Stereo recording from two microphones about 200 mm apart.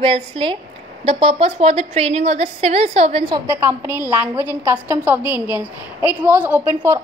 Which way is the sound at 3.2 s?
15° right (ahead or behind).